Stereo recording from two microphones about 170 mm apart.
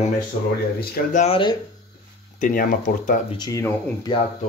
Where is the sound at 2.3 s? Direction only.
50° left (ahead or behind).